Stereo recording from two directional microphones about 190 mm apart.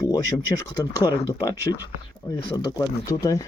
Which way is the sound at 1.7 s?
20° left (ahead or behind).